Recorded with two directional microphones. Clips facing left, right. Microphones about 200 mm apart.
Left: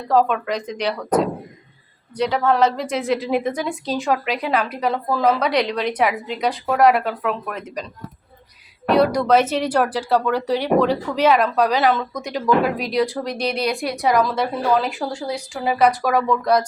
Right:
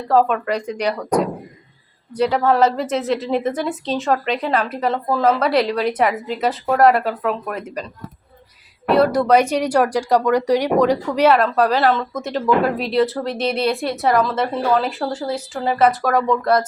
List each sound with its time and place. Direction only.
0.1 s speech: 5° right (ahead or behind)
2.1 s a woman's voice: 5° right (ahead or behind)
8.9 s a woman's voice: 5° right (ahead or behind)